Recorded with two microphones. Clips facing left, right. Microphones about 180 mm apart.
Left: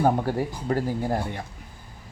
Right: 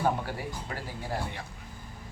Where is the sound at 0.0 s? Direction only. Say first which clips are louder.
Left 7 dB; 45° left (ahead or behind).